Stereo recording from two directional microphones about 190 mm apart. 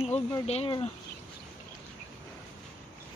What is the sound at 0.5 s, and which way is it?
Speech, 30° left (ahead or behind).